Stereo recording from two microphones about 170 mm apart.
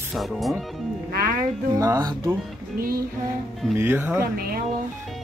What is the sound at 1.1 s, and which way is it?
Speech, 65° right (ahead or behind).